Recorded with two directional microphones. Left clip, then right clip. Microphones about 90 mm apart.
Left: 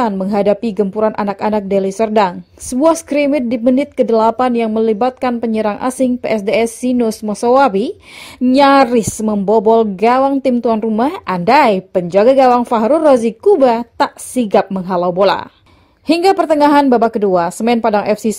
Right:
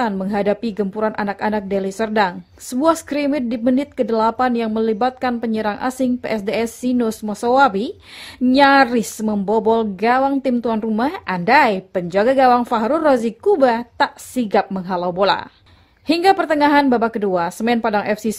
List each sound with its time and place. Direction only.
0.0 s speech: 30° left (ahead or behind)